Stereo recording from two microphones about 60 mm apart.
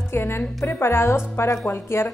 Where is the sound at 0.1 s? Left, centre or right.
Left.